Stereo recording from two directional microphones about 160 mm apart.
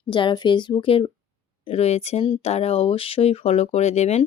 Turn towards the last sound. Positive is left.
turn(degrees=45)  # may be behind; listen again after turning